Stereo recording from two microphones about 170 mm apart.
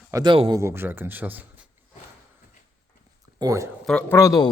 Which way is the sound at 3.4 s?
20° right (ahead or behind).